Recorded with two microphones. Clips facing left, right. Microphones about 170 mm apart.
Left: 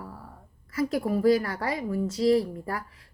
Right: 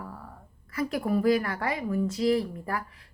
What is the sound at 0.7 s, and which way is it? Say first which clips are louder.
A woman's voice: left 1 dB; 25° left (ahead or behind).